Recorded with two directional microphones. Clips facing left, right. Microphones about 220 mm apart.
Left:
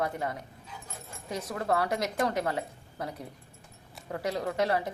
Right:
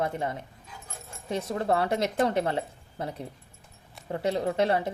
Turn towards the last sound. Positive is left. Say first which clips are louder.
# right 3 dB
turn(degrees=-25)  # may be behind; listen again after turning